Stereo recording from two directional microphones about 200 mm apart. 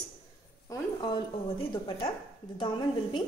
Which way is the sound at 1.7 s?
25° left (ahead or behind).